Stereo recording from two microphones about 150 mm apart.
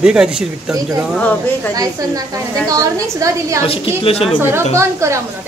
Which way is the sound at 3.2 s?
20° right (ahead or behind).